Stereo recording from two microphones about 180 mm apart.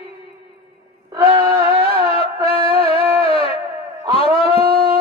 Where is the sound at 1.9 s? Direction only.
30° left (ahead or behind).